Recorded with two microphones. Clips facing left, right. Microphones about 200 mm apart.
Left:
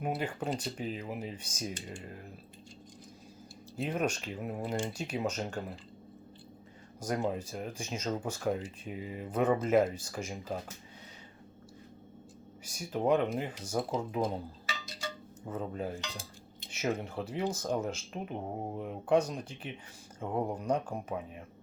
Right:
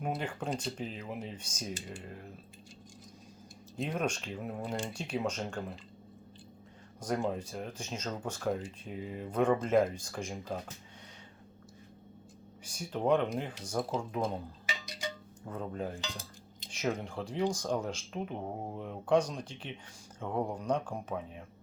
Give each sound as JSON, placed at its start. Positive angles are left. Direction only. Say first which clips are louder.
{"t": 0.0, "sound": "speech", "louder": "left 2 dB", "side_deg": 5}
{"t": 3.8, "sound": "speech", "louder": "left 1 dB", "side_deg": 10}
{"t": 7.0, "sound": "speech", "louder": "even", "side_deg": 5}
{"t": 12.6, "sound": "speech", "louder": "left 1 dB", "side_deg": 5}
{"t": 14.7, "sound": "wind chime", "louder": "right 2 dB", "side_deg": -15}
{"t": 15.4, "sound": "speech", "louder": "left 1 dB", "side_deg": 5}